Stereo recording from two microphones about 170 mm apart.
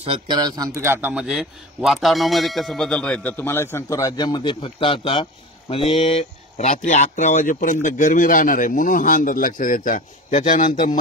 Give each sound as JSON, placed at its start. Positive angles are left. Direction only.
{"t": 0.0, "sound": "speech", "side_deg": -30}
{"t": 0.7, "sound": "speech", "side_deg": -15}